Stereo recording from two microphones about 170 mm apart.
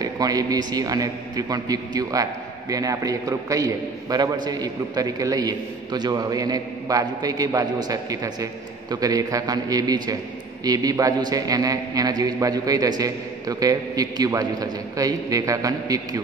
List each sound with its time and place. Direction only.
0.0 s a man's voice: 20° right (ahead or behind)